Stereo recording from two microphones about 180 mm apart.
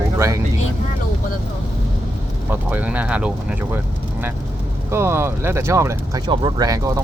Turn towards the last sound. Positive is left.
turn(degrees=-20)  # may be behind; listen again after turning